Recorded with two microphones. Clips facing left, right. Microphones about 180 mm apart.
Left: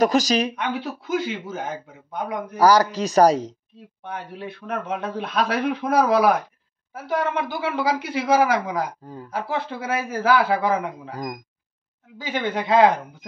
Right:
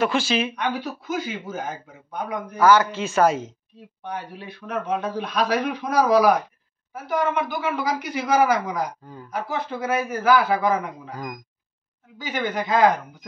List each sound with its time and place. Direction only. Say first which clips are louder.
0.0 s a man's voice: left 3 dB; 40° left (ahead or behind)
0.6 s a man's voice: even; 25° left (ahead or behind)
4.5 s speech: right 2 dB; 25° left (ahead or behind)
7.3 s speech: even; 30° left (ahead or behind)